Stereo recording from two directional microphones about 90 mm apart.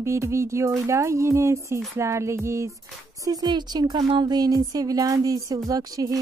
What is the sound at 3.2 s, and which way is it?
Music, 50° right (ahead or behind).